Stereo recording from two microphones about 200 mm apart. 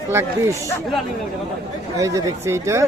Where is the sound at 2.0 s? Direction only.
15° right (ahead or behind).